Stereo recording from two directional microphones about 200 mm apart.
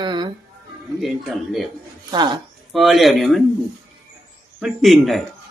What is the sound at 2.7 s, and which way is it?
Speech, centre (ahead or behind).